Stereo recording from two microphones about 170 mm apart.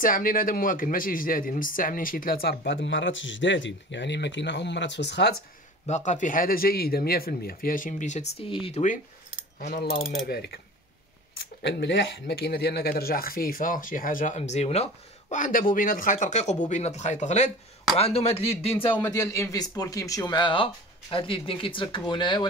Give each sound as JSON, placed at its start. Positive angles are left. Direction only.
{"t": 0.0, "sound": "speech", "side_deg": 55}
{"t": 5.9, "sound": "speech", "side_deg": 45}
{"t": 9.7, "sound": "speech", "side_deg": 50}
{"t": 10.2, "sound": "speech", "side_deg": 70}
{"t": 11.6, "sound": "a man's voice", "side_deg": 90}